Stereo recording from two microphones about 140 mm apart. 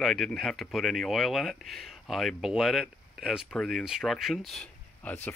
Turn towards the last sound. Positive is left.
turn(degrees=10)  # may be behind; listen again after turning